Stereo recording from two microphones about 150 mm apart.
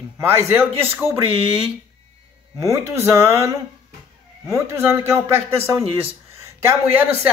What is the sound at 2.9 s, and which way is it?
Speech, 20° right (ahead or behind).